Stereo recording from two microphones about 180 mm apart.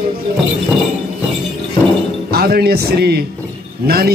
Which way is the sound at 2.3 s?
60° right (ahead or behind).